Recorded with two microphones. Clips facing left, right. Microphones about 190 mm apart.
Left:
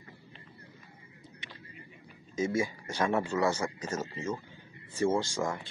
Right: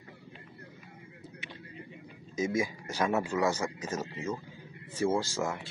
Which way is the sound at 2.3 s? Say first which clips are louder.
Even; 10° right (ahead or behind).